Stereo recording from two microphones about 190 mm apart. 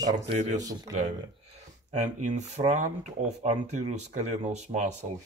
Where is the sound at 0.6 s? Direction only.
20° right (ahead or behind).